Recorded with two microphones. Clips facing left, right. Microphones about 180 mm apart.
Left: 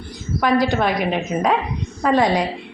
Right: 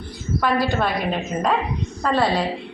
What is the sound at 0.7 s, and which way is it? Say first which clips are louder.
A woman's voice: left 3 dB; 15° left (ahead or behind).